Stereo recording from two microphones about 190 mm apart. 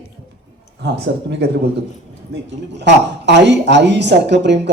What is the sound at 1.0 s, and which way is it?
Speech, 60° right (ahead or behind).